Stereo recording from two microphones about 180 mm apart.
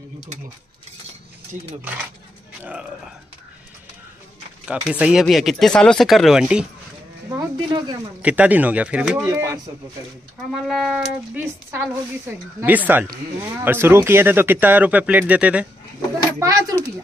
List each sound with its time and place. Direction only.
2.6 s speech: 5° right (ahead or behind)
4.6 s speech: 5° right (ahead or behind)
7.2 s speech: 20° right (ahead or behind)
8.2 s speech: 5° right (ahead or behind)
10.5 s speech: centre (ahead or behind)
11.7 s speech: 15° right (ahead or behind)
16.3 s speech: 20° right (ahead or behind)